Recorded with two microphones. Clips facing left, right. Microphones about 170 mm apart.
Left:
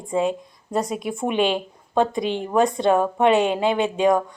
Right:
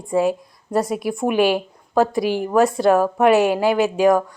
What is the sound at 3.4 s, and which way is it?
Speech, 25° left (ahead or behind).